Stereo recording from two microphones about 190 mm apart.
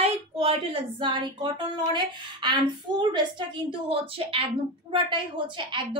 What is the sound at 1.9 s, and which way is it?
A woman's voice, 25° right (ahead or behind).